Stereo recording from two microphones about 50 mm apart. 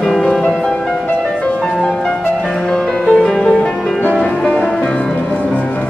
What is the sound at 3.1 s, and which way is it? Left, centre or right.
Music, centre.